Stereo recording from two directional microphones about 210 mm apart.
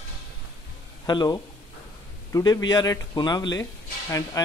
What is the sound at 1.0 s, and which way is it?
Speech, 20° left (ahead or behind).